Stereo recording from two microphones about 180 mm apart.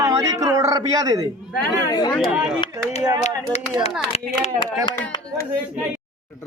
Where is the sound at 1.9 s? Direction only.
25° left (ahead or behind).